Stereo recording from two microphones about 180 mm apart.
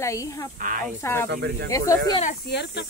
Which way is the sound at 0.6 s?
45° right (ahead or behind).